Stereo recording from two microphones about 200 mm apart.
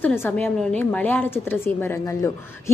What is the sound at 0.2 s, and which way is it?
A woman's voice, 10° left (ahead or behind).